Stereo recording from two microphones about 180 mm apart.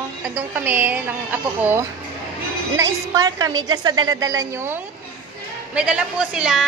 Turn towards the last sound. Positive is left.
turn(degrees=-5)  # may be behind; listen again after turning